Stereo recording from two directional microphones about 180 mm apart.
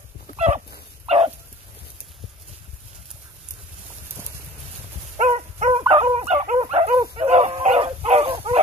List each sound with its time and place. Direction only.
1.0 s bow-wow: 35° right (ahead or behind)
5.1 s dog: 35° right (ahead or behind)
6.6 s dog: 30° right (ahead or behind)